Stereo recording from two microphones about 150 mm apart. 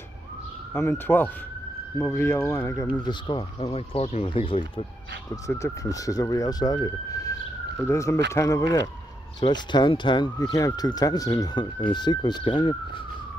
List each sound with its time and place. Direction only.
0.7 s speech: 15° left (ahead or behind); by 4.8 s 35° left (ahead or behind)
5.3 s speech: 20° left (ahead or behind)